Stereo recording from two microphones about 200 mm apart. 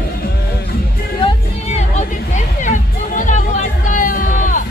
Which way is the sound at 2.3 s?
40° left (ahead or behind).